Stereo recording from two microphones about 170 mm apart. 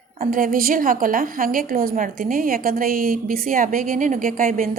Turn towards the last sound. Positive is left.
turn(degrees=-55)  # may be behind; listen again after turning